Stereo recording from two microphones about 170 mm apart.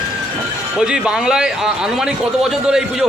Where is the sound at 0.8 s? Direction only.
5° right (ahead or behind).